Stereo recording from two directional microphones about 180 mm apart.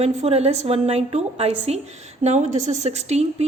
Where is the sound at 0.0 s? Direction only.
35° right (ahead or behind).